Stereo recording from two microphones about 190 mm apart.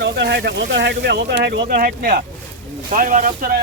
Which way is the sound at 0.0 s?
65° right (ahead or behind).